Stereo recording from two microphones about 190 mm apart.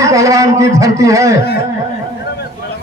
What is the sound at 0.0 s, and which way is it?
A man's voice, 15° right (ahead or behind).